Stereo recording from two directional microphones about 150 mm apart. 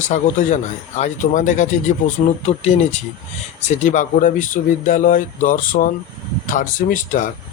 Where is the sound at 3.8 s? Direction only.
60° left (ahead or behind).